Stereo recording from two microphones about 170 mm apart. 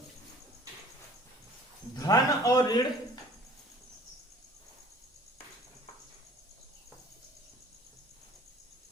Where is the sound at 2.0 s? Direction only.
20° left (ahead or behind).